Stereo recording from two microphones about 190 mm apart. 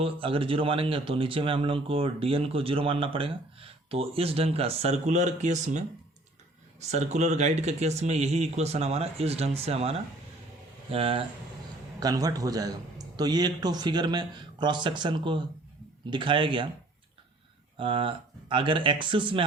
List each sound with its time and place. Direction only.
0.0 s speech: 30° right (ahead or behind)
10.9 s speech: 30° right (ahead or behind)
11.9 s speech: 20° right (ahead or behind)
17.7 s speech: 25° right (ahead or behind)